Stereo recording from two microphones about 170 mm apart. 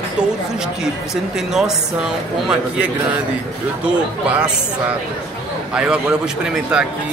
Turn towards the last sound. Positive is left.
turn(degrees=-5)  # may be behind; listen again after turning